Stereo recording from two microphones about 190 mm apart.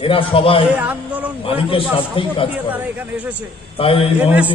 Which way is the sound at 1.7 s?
30° left (ahead or behind).